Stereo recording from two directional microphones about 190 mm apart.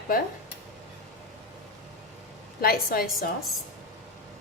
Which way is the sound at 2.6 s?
50° left (ahead or behind).